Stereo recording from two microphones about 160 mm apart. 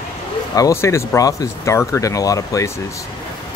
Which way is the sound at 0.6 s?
20° left (ahead or behind).